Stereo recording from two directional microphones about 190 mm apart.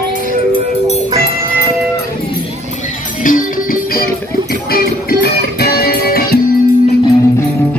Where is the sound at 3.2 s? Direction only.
45° left (ahead or behind).